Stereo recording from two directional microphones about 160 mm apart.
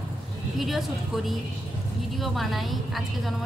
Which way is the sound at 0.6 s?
Centre (ahead or behind).